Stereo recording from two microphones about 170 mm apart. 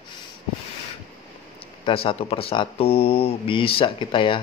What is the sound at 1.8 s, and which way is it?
Speech, 35° left (ahead or behind).